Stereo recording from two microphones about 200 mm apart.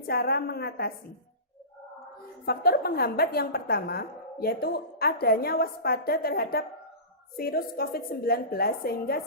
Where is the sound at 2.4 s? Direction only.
50° left (ahead or behind).